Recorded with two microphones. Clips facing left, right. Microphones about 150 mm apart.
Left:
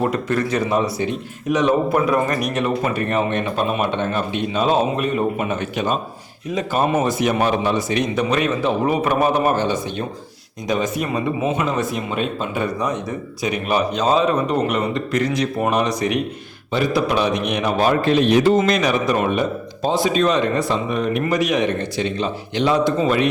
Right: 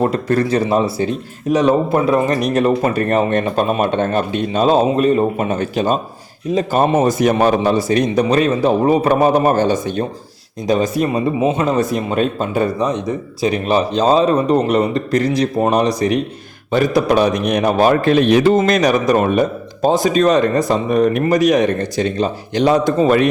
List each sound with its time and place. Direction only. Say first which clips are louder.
0.0 s a man's voice: right 4 dB; 35° right (ahead or behind)
2.6 s a man's voice: right 7 dB; 40° right (ahead or behind)
12.8 s a man's voice: right 5 dB; 20° right (ahead or behind); by 23.3 s 45° right (ahead or behind)